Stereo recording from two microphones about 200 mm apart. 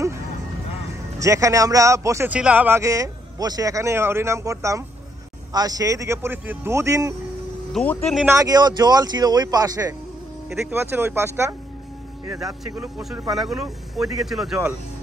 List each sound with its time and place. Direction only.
1.2 s speech: 15° right (ahead or behind)
7.7 s speech: 5° left (ahead or behind)
8.2 s a man's voice: 15° right (ahead or behind)
12.6 s speech: 5° right (ahead or behind)